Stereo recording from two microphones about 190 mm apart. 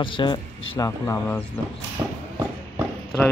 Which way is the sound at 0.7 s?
15° left (ahead or behind).